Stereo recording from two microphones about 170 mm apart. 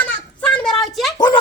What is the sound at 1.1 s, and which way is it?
Speech, 25° left (ahead or behind).